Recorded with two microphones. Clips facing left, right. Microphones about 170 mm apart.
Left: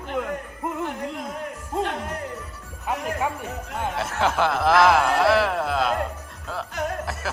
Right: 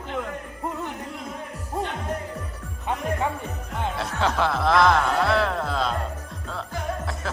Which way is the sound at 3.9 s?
Centre (ahead or behind).